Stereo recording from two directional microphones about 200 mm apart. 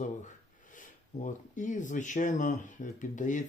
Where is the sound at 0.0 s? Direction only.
40° left (ahead or behind).